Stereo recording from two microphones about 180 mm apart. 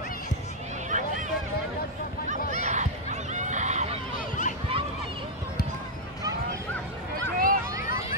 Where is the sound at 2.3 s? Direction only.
40° right (ahead or behind).